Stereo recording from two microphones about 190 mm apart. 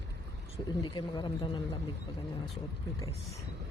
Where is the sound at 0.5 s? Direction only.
25° left (ahead or behind).